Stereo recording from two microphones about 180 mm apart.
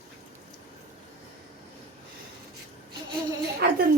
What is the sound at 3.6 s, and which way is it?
Speech, 60° right (ahead or behind).